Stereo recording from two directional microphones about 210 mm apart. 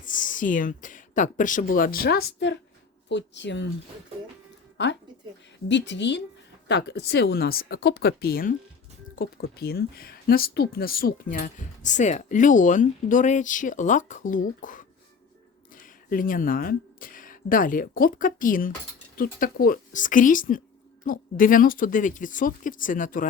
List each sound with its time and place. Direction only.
0.0 s speech: 40° left (ahead or behind); by 3.7 s 55° left (ahead or behind)
4.8 s speech: 60° left (ahead or behind); by 23.3 s 40° left (ahead or behind)